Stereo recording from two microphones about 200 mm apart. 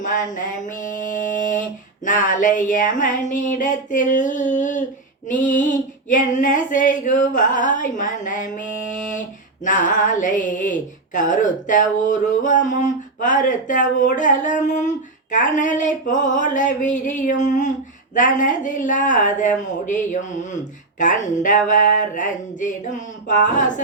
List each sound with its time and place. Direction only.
0.0 s speech: 40° left (ahead or behind)